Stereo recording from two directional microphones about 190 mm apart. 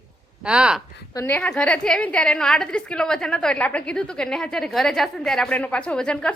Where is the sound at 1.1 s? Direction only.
10° left (ahead or behind).